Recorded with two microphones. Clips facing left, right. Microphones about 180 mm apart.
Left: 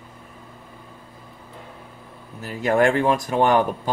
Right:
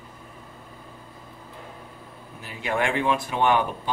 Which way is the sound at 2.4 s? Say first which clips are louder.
Left 8 dB; 45° left (ahead or behind).